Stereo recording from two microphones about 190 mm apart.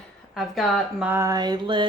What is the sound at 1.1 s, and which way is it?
Mantra, 15° right (ahead or behind).